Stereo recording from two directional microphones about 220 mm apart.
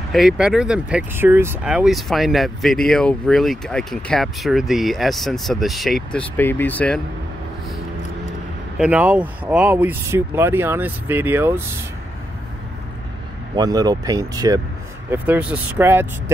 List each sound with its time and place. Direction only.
0.1 s speech: centre (ahead or behind)
8.7 s speech: 5° right (ahead or behind)
13.6 s speech: 20° right (ahead or behind)